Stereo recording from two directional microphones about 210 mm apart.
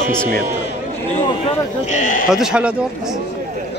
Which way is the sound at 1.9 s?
40° left (ahead or behind).